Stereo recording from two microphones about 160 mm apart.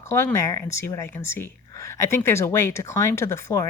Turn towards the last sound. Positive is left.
turn(degrees=20)  # may be behind; listen again after turning